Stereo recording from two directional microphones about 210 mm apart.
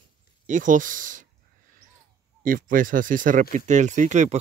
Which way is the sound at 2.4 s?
40° right (ahead or behind).